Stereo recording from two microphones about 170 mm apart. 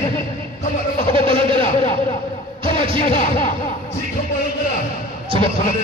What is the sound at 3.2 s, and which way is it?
Speech, 50° left (ahead or behind).